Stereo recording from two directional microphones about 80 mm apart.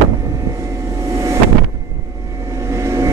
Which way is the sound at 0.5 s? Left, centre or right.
Right.